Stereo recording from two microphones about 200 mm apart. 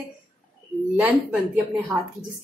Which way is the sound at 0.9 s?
5° right (ahead or behind).